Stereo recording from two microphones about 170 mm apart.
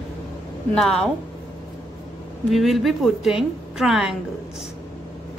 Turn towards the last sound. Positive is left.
turn(degrees=0)  # may be behind; listen again after turning